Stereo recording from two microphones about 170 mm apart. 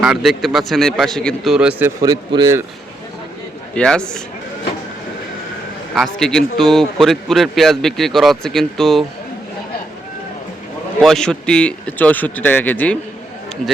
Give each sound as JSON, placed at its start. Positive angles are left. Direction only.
{"t": 0.0, "sound": "a man's voice", "side_deg": -5}
{"t": 1.5, "sound": "speech", "side_deg": -5}
{"t": 2.0, "sound": "speech", "side_deg": -25}
{"t": 3.8, "sound": "a man's voice", "side_deg": 5}
{"t": 5.9, "sound": "a man's voice", "side_deg": 0}
{"t": 11.0, "sound": "speech", "side_deg": 5}